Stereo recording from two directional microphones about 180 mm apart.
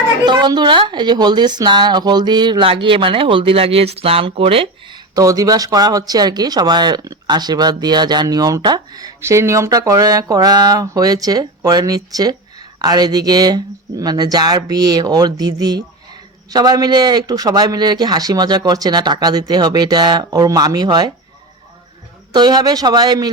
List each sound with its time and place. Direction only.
0.3 s a woman's voice: 25° right (ahead or behind)
22.3 s a woman's voice: 25° right (ahead or behind)